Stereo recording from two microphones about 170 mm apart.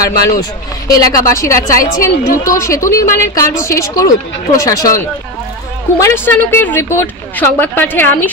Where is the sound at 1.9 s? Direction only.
55° left (ahead or behind).